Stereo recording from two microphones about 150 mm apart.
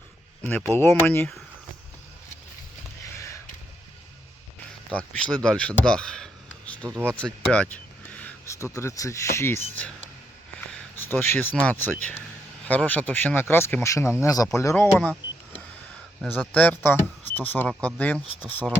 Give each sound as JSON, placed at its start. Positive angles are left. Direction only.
{"t": 0.4, "sound": "speech", "side_deg": 15}
{"t": 4.9, "sound": "speech", "side_deg": 10}
{"t": 6.9, "sound": "speech", "side_deg": -15}
{"t": 7.2, "sound": "speech", "side_deg": 5}
{"t": 16.5, "sound": "speech", "side_deg": 10}